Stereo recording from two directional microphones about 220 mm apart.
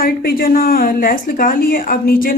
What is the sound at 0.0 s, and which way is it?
A woman's voice, 40° left (ahead or behind).